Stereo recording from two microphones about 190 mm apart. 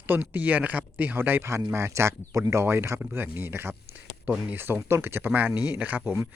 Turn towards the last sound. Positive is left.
turn(degrees=-10)  # may be behind; listen again after turning